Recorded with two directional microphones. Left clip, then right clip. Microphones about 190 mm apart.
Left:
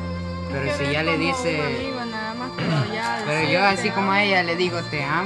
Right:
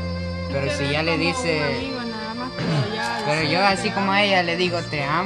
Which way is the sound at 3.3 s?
20° right (ahead or behind).